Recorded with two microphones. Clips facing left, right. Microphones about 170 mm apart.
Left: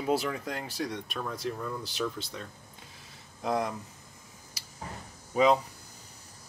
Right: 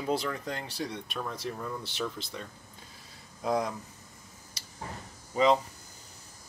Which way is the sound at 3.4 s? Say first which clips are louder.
Even; centre (ahead or behind).